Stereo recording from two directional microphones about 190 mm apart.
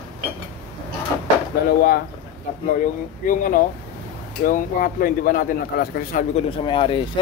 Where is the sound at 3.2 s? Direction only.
45° left (ahead or behind).